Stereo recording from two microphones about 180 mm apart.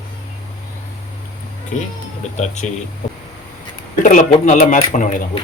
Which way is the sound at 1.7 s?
45° left (ahead or behind).